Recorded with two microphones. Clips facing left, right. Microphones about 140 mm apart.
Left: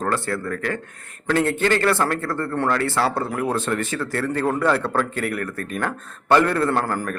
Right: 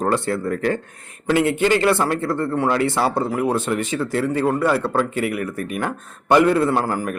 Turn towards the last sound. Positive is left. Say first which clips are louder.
# right 2 dB
turn(degrees=-10)  # may be behind; listen again after turning